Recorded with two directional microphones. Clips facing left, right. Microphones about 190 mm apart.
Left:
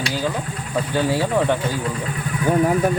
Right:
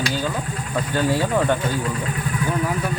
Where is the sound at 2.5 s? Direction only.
45° left (ahead or behind).